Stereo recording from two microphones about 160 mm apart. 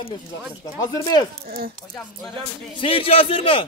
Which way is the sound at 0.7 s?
25° left (ahead or behind).